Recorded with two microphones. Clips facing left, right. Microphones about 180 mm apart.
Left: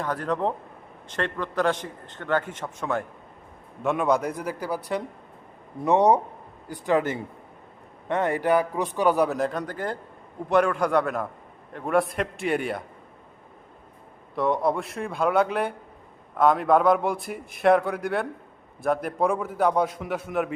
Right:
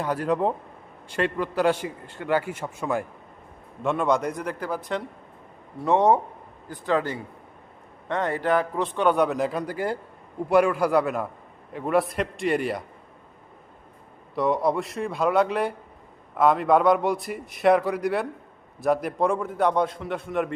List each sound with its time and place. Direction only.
0.0 s a man's voice: 10° right (ahead or behind)
3.9 s speech: 5° left (ahead or behind)
5.8 s a man's voice: 15° left (ahead or behind); by 12.8 s centre (ahead or behind)
14.3 s a man's voice: centre (ahead or behind)